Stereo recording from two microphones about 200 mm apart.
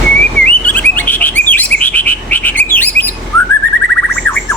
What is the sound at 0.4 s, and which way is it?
Chirp, 10° left (ahead or behind).